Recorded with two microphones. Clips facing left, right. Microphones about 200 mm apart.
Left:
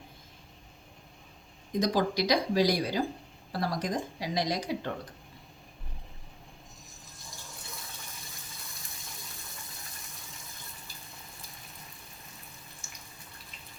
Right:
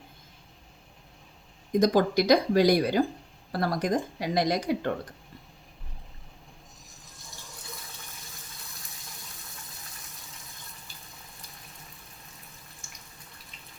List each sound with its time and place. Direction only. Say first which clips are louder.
1.8 s speech: right 5 dB; 55° right (ahead or behind)